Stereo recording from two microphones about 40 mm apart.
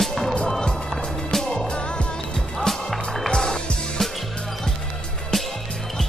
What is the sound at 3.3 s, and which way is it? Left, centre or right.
Skateboard, centre.